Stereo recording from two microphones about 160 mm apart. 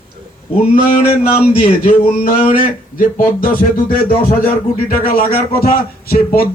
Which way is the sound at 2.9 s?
60° left (ahead or behind).